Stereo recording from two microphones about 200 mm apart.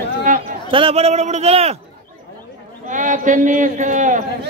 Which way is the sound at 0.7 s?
30° right (ahead or behind).